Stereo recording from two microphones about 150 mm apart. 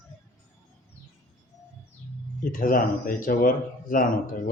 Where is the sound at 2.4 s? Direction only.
65° left (ahead or behind).